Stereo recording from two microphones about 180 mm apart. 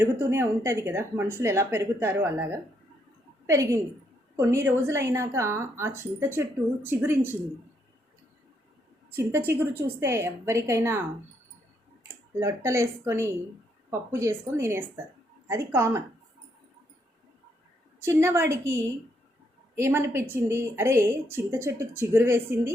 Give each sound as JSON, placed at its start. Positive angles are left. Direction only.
{"t": 0.0, "sound": "a woman's voice", "side_deg": -15}
{"t": 9.1, "sound": "speech", "side_deg": -15}
{"t": 12.0, "sound": "speech", "side_deg": -15}
{"t": 18.0, "sound": "speech", "side_deg": -15}